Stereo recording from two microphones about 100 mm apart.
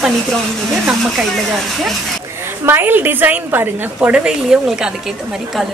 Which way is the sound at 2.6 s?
20° right (ahead or behind).